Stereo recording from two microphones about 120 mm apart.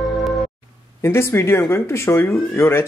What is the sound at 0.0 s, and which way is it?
Music, centre (ahead or behind).